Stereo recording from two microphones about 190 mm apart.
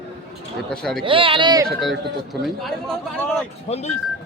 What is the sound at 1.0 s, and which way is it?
Speech, 25° right (ahead or behind).